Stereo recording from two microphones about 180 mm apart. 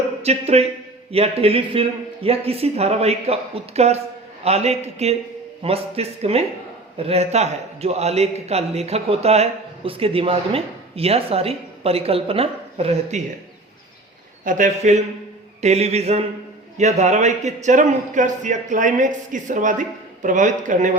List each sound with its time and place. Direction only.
0.2 s a man's voice: 35° right (ahead or behind)
14.4 s a man's voice: 45° right (ahead or behind)